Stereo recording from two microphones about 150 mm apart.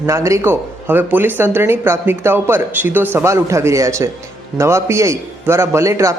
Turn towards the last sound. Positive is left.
turn(degrees=-20)  # may be behind; listen again after turning